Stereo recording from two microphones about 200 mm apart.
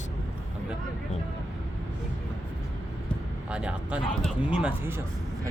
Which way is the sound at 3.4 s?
5° right (ahead or behind).